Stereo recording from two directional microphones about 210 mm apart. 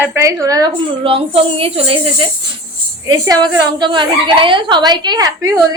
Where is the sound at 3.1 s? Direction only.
15° right (ahead or behind).